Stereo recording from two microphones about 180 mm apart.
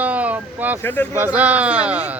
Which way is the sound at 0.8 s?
10° left (ahead or behind).